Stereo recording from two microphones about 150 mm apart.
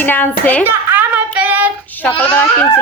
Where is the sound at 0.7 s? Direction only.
15° right (ahead or behind).